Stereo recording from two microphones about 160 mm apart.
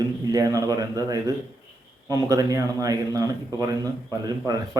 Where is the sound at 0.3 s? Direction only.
20° right (ahead or behind).